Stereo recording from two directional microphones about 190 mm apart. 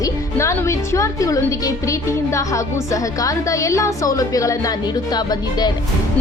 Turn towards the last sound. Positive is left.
turn(degrees=20)  # may be behind; listen again after turning